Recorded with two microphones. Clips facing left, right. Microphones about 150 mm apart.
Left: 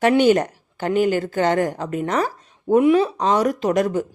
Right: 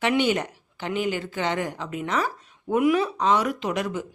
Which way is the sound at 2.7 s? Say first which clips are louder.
Left 6 dB; 30° left (ahead or behind).